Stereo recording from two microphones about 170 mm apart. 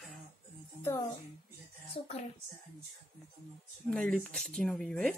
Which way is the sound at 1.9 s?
35° left (ahead or behind).